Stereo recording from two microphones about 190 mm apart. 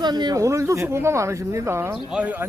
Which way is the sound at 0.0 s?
20° right (ahead or behind).